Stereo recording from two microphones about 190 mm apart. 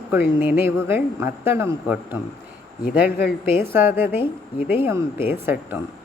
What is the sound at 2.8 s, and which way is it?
Speech, 55° left (ahead or behind).